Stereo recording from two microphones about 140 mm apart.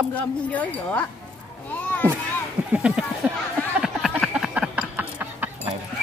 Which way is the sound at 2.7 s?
5° right (ahead or behind).